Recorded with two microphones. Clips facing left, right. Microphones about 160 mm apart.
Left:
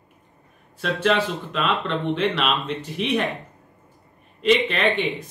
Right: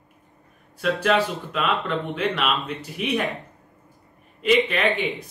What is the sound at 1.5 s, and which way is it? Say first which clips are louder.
A man's voice: left 1 dB; 5° right (ahead or behind).